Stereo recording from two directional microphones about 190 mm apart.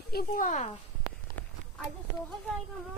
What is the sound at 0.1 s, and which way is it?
Speech, 50° left (ahead or behind).